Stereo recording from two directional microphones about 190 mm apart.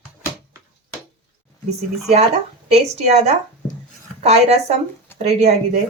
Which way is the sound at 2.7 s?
35° right (ahead or behind).